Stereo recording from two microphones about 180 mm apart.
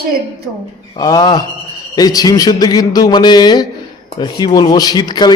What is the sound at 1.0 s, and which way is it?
A man's voice, 20° left (ahead or behind).